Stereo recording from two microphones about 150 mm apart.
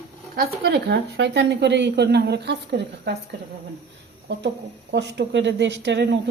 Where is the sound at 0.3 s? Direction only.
90° right.